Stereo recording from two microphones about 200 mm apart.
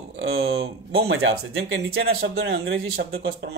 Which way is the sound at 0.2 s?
55° right (ahead or behind).